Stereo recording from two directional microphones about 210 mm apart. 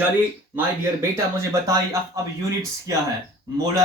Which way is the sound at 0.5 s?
10° right (ahead or behind).